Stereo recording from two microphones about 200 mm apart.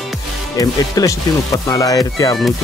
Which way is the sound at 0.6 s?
15° left (ahead or behind).